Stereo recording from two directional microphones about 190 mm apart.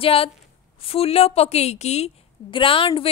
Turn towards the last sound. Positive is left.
turn(degrees=30)  # may be behind; listen again after turning